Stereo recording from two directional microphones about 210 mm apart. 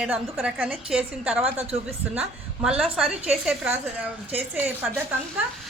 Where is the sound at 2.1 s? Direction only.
5° right (ahead or behind).